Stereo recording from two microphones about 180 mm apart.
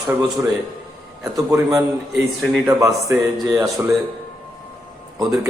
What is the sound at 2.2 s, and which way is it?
Speech, centre (ahead or behind).